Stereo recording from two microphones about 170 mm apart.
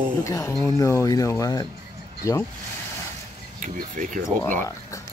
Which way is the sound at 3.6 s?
50° right (ahead or behind).